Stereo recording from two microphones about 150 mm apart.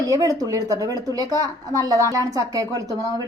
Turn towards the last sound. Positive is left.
turn(degrees=-25)  # may be behind; listen again after turning